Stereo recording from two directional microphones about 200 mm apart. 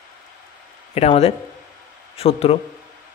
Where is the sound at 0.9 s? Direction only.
30° left (ahead or behind).